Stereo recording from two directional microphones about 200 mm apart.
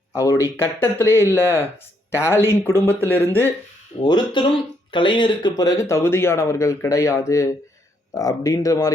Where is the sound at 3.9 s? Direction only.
25° left (ahead or behind).